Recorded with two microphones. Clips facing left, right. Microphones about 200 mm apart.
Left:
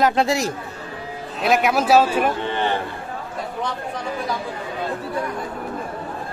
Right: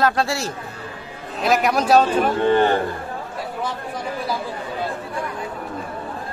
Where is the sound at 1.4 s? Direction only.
Centre (ahead or behind).